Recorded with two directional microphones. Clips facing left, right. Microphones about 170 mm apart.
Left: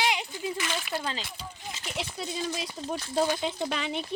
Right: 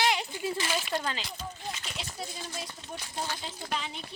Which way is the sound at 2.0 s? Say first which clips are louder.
Left 6 dB; 90° left.